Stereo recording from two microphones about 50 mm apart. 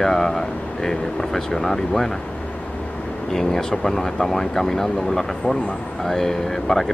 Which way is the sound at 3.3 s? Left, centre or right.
Centre.